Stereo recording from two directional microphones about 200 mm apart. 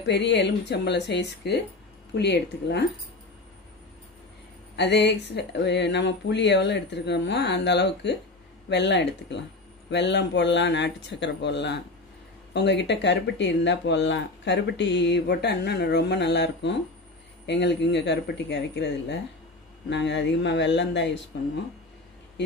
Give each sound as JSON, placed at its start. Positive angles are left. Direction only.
{"t": 0.0, "sound": "speech", "side_deg": 60}
{"t": 4.7, "sound": "speech", "side_deg": 60}